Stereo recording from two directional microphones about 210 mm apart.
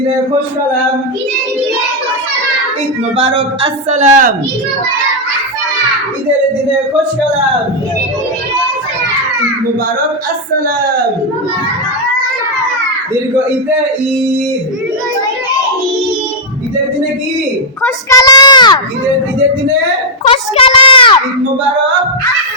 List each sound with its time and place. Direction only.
3.2 s speech: 30° right (ahead or behind)
17.8 s speech: 15° left (ahead or behind)
20.2 s speech: 25° left (ahead or behind)